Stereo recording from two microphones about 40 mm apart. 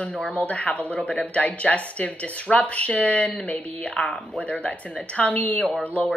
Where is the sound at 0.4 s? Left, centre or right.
Left.